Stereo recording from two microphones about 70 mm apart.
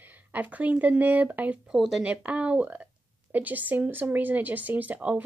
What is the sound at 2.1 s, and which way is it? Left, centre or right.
A woman's voice, centre.